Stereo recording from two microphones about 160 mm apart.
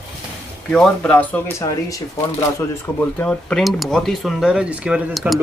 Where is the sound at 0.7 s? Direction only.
5° left (ahead or behind).